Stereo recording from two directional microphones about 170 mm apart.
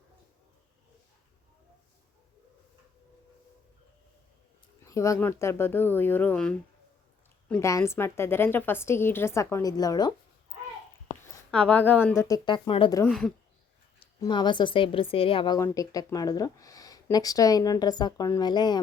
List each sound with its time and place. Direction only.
4.9 s a woman's voice: 20° left (ahead or behind)
7.6 s a woman's voice: 15° left (ahead or behind)
11.5 s a woman's voice: 5° left (ahead or behind); by 13.0 s 30° left (ahead or behind)
13.1 s a woman's voice: centre (ahead or behind)
14.2 s a woman's voice: 25° left (ahead or behind)
15.5 s speech: 20° left (ahead or behind)